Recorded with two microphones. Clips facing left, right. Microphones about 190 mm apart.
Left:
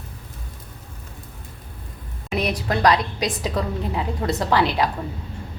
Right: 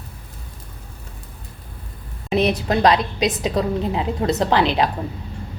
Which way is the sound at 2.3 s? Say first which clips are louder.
Right 5 dB; 25° right (ahead or behind).